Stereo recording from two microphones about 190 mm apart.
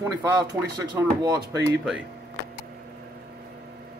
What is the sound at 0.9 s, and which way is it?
Speech, 20° right (ahead or behind).